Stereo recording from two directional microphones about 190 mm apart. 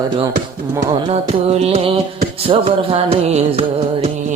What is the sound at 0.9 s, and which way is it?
Music, 30° right (ahead or behind).